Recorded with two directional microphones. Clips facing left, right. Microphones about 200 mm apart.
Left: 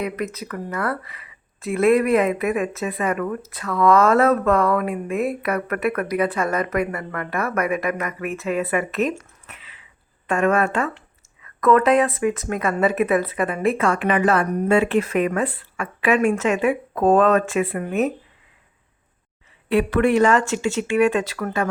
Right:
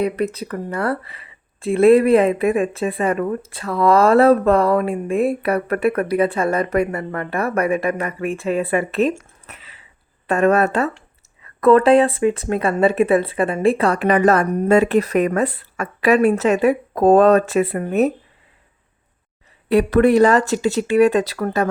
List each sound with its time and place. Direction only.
0.0 s speech: 30° right (ahead or behind)
9.5 s a sound: 40° right (ahead or behind)
10.2 s speech: 40° right (ahead or behind)
19.6 s speech: 40° right (ahead or behind)